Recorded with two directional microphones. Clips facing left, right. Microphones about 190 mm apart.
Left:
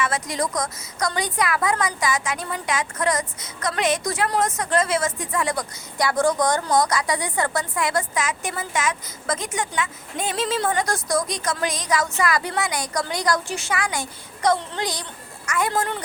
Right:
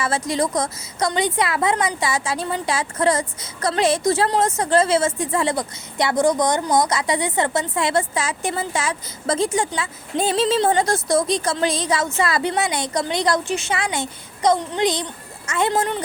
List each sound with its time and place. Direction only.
0.0 s a woman's voice: 30° right (ahead or behind)